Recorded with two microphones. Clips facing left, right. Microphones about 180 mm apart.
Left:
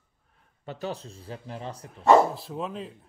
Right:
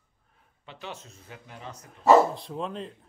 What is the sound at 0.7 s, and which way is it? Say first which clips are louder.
Speech: left 7 dB; 40° left (ahead or behind).